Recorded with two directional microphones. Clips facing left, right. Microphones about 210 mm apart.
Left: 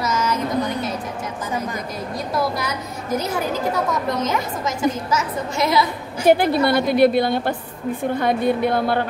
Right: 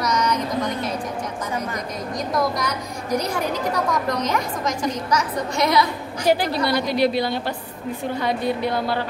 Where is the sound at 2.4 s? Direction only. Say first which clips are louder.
Even; 5° left (ahead or behind).